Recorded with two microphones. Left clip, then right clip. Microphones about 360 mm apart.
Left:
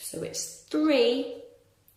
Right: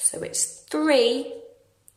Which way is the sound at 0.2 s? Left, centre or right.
Right.